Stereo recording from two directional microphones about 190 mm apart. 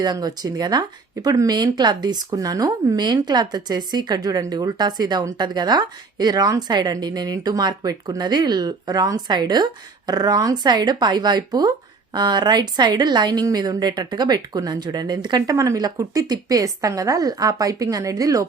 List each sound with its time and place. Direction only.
0.0 s speech: 20° right (ahead or behind)